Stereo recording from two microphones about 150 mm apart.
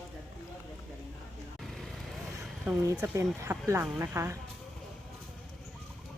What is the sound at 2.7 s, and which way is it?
Speech, 15° right (ahead or behind).